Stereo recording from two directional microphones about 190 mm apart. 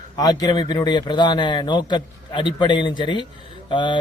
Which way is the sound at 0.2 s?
20° left (ahead or behind).